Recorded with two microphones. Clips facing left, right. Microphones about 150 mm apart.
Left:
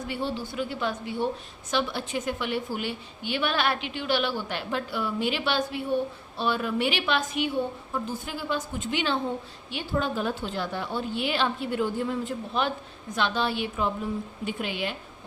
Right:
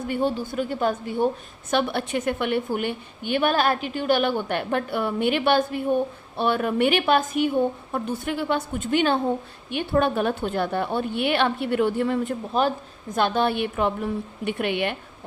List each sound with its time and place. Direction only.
0.1 s a woman's voice: 50° right (ahead or behind)
1.7 s a woman's voice: 60° right (ahead or behind)
7.9 s a woman's voice: 65° right (ahead or behind)
12.5 s a woman's voice: 40° right (ahead or behind); by 14.9 s 60° right (ahead or behind)